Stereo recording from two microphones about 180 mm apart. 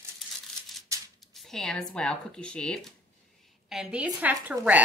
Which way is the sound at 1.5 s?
5° left (ahead or behind).